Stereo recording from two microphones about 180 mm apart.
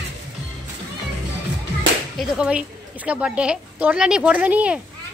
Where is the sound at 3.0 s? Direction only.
5° right (ahead or behind).